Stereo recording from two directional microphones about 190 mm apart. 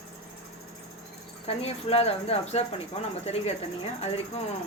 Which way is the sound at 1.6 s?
30° left (ahead or behind).